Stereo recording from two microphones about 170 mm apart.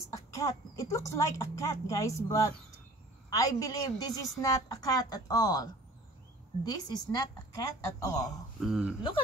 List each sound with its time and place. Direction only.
0.1 s speech: 20° left (ahead or behind)
8.5 s speech: centre (ahead or behind)